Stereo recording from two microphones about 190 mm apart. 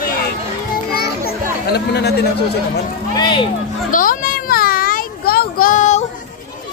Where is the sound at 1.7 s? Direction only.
60° left (ahead or behind).